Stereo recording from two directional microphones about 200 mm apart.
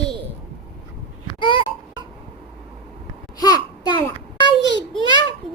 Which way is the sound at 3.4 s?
20° left (ahead or behind).